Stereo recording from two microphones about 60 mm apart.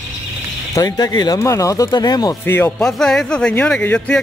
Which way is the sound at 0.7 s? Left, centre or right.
Left.